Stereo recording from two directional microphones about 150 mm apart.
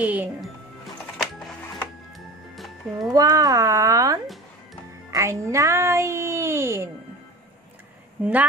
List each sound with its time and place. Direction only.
0.0 s speech: 10° right (ahead or behind)
2.1 s music: centre (ahead or behind)
3.1 s speech: 25° right (ahead or behind)
8.2 s speech: 10° right (ahead or behind)